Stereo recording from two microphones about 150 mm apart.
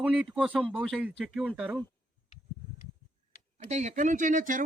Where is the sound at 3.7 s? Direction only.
50° right (ahead or behind).